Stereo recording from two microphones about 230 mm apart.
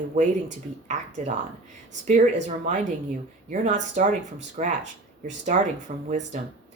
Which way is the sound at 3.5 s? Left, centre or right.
Right.